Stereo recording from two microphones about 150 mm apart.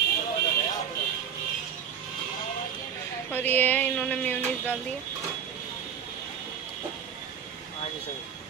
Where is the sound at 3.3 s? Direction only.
10° left (ahead or behind).